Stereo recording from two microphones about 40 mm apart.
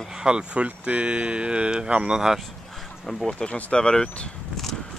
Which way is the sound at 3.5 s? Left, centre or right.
Left.